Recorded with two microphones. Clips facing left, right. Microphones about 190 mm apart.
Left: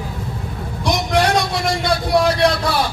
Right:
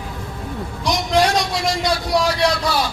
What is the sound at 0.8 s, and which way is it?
A man's voice, 55° left (ahead or behind).